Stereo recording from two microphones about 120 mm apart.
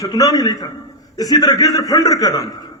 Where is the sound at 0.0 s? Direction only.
30° left (ahead or behind).